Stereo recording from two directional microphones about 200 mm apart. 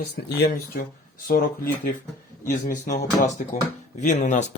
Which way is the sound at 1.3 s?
45° left (ahead or behind).